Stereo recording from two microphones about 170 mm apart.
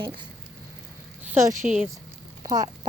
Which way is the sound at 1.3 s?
15° right (ahead or behind).